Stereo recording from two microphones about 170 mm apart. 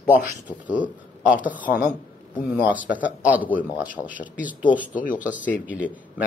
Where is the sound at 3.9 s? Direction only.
50° left (ahead or behind).